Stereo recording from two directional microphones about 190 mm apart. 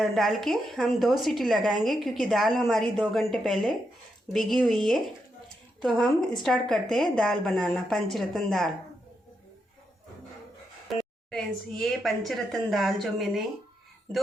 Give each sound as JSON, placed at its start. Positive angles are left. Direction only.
{"t": 0.0, "sound": "a woman's voice", "side_deg": 0}
{"t": 10.8, "sound": "a woman's voice", "side_deg": 0}